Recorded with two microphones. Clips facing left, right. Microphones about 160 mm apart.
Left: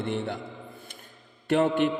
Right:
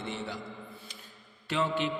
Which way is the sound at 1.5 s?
55° left (ahead or behind).